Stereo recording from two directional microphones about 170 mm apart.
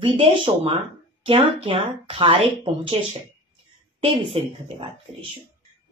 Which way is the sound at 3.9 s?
30° right (ahead or behind).